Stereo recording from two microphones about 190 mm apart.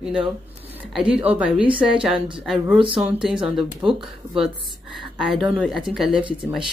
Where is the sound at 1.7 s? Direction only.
25° right (ahead or behind).